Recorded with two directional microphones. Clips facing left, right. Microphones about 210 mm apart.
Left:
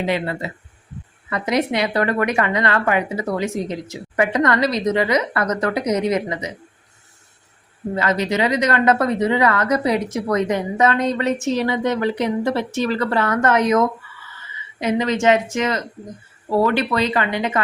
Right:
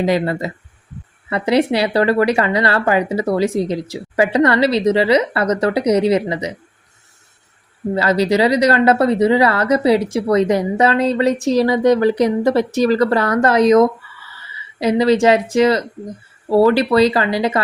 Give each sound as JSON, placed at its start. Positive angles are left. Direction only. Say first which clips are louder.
{"t": 0.0, "sound": "speech", "louder": "right 5 dB", "side_deg": -40}
{"t": 7.9, "sound": "speech", "louder": "right 5 dB", "side_deg": -35}